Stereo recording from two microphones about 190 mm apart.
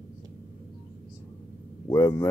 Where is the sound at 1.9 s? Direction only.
15° left (ahead or behind).